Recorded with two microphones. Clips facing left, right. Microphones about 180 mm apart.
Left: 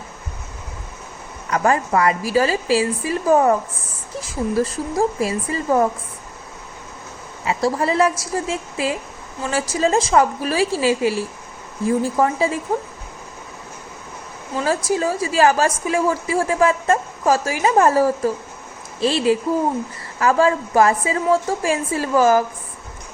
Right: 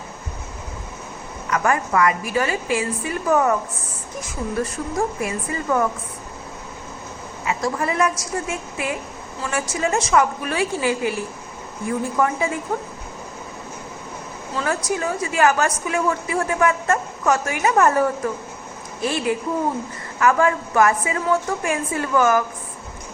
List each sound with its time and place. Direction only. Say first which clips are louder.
1.5 s a woman's voice: left 2 dB; 30° left (ahead or behind)
7.4 s a woman's voice: left 4 dB; 30° left (ahead or behind)
14.6 s a woman's voice: left 4 dB; 30° left (ahead or behind)